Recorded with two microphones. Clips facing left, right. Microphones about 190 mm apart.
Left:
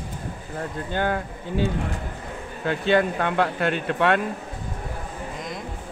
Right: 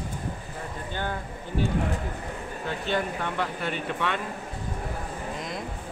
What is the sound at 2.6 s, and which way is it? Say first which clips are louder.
Speech: left 8 dB; 75° left (ahead or behind).